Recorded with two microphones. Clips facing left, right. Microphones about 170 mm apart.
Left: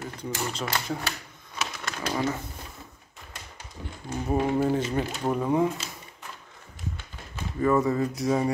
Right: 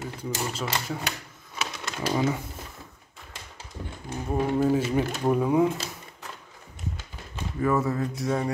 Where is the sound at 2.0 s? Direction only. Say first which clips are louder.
Right 3 dB; 10° right (ahead or behind).